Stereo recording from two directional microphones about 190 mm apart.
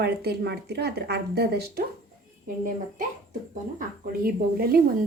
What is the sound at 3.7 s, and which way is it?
Speech, 50° right (ahead or behind).